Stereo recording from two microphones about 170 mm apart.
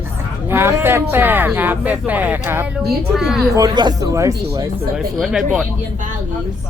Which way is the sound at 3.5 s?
25° right (ahead or behind).